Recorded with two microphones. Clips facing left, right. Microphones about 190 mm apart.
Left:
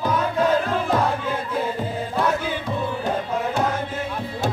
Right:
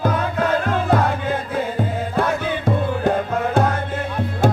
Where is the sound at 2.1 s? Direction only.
55° right (ahead or behind).